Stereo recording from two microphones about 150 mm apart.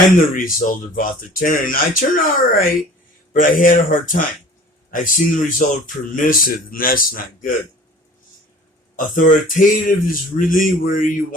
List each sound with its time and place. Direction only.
0.3 s speech: 65° left (ahead or behind)
9.0 s speech: 65° left (ahead or behind)